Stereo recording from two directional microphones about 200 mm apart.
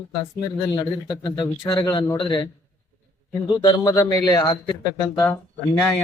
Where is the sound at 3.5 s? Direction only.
20° left (ahead or behind).